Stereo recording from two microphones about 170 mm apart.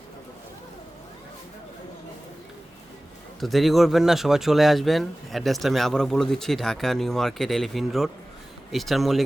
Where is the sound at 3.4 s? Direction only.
Centre (ahead or behind).